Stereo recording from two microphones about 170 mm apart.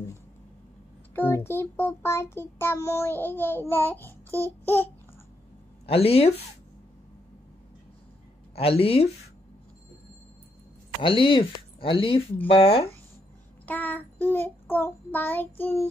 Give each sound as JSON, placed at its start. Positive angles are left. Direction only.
{"t": 1.1, "sound": "child singing", "side_deg": 10}
{"t": 5.9, "sound": "speech", "side_deg": 35}
{"t": 8.5, "sound": "speech", "side_deg": 35}
{"t": 11.0, "sound": "speech", "side_deg": 30}
{"t": 13.7, "sound": "child singing", "side_deg": 10}